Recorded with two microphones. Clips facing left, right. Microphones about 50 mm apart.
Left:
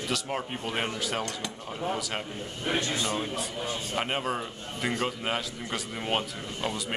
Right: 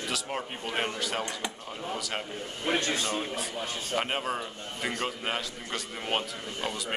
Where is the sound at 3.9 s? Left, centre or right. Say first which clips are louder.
Right 1 dB; centre.